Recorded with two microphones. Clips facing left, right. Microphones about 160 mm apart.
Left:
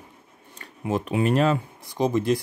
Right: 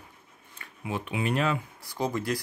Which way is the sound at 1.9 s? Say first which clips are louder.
Left 7 dB; 20° left (ahead or behind).